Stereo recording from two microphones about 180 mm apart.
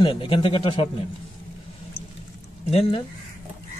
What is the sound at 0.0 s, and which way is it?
Speech, 30° left (ahead or behind).